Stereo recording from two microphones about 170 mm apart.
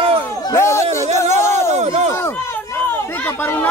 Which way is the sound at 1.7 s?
40° right (ahead or behind).